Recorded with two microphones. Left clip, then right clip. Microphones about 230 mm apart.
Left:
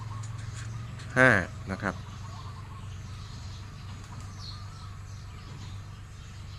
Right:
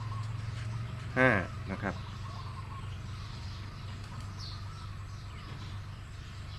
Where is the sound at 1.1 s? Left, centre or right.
Left.